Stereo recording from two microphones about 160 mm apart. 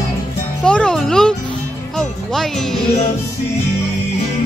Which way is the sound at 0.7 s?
5° left (ahead or behind).